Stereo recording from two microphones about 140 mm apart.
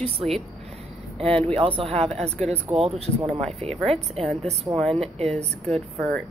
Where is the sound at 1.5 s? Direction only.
40° right (ahead or behind).